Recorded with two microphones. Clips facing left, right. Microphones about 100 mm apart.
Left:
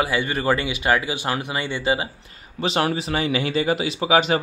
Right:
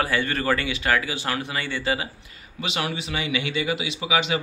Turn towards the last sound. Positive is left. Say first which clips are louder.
# left 5 dB
turn(degrees=40)  # may be behind; listen again after turning